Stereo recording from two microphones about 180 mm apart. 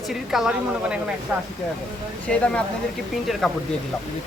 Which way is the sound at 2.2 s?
5° left (ahead or behind).